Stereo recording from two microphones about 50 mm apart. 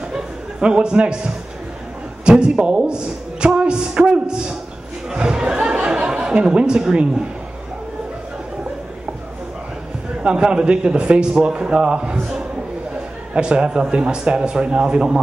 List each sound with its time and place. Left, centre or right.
0.1 s chuckle: centre
2.2 s a man's voice: centre
5.7 s chuckle: centre
10.2 s a man's voice: centre